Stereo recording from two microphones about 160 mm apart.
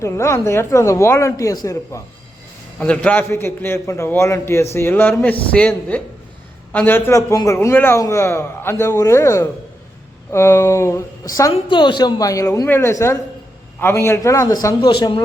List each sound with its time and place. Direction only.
0.0 s a man's voice: 20° left (ahead or behind)
2.7 s a man's voice: 10° left (ahead or behind)
11.5 s a woman's voice: 30° left (ahead or behind)
14.8 s a man's voice: 30° left (ahead or behind)